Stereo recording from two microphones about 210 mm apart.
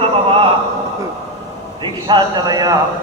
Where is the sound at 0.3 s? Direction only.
25° right (ahead or behind).